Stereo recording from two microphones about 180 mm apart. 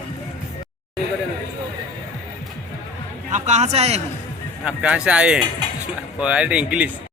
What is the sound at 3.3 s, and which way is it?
Speech, 40° right (ahead or behind).